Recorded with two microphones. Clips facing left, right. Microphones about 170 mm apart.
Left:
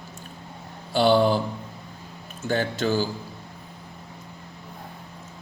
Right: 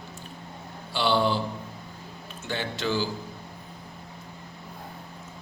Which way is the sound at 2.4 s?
45° left (ahead or behind).